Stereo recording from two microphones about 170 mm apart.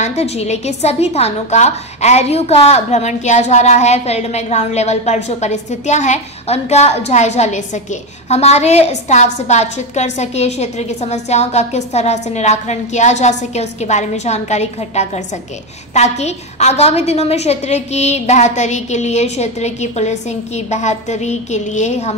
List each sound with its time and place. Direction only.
0.0 s a woman's voice: 40° left (ahead or behind)